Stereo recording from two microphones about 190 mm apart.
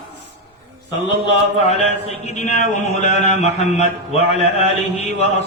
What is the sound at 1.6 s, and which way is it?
Speech, 35° left (ahead or behind).